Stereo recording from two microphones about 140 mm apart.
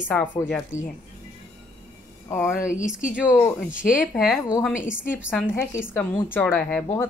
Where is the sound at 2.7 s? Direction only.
65° left (ahead or behind).